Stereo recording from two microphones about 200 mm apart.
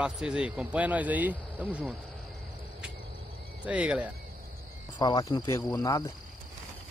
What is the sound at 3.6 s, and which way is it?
Speech, 5° right (ahead or behind).